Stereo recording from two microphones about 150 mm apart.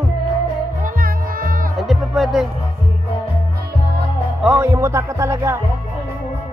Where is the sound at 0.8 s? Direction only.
70° right (ahead or behind).